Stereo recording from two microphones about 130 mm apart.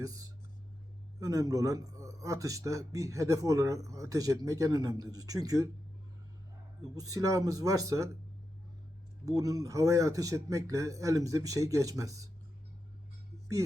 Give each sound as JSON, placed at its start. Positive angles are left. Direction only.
{"t": 1.2, "sound": "a man's voice", "side_deg": -25}
{"t": 6.9, "sound": "a man's voice", "side_deg": -25}
{"t": 9.2, "sound": "a man's voice", "side_deg": -25}